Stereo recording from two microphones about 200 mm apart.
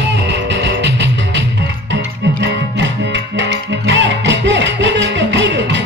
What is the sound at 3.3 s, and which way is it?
Music, 60° right (ahead or behind).